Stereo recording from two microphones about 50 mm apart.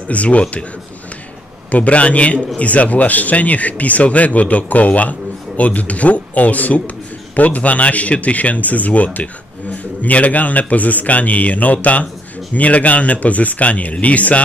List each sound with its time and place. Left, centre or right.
0.1 s a man's voice: left
1.7 s a man's voice: left